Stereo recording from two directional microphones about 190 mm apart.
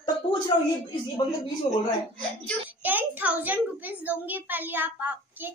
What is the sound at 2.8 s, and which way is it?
A child's voice, 10° right (ahead or behind).